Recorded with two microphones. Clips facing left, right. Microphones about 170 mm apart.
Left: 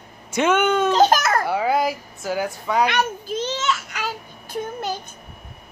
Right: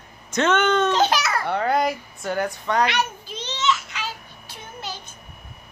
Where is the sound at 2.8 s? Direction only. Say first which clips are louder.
Left 3 dB; 50° left (ahead or behind).